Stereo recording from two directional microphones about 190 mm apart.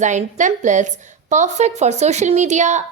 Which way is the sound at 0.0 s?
40° right (ahead or behind).